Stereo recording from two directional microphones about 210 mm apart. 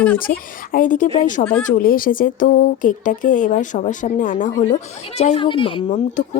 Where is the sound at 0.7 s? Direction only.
40° left (ahead or behind).